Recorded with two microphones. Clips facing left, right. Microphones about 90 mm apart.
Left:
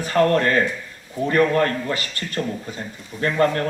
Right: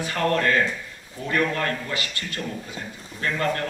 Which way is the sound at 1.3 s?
40° left (ahead or behind).